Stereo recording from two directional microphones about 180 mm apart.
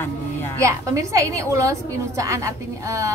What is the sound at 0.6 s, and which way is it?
A woman's voice, 15° right (ahead or behind).